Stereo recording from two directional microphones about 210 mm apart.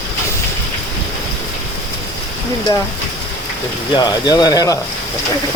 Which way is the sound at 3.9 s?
20° left (ahead or behind).